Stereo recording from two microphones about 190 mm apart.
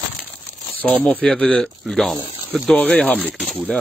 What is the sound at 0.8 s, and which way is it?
Speech, 10° left (ahead or behind).